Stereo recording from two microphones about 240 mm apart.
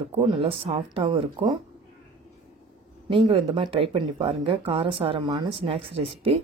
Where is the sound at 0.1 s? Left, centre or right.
Right.